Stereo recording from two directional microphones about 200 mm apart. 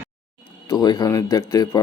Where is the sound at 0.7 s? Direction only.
20° left (ahead or behind).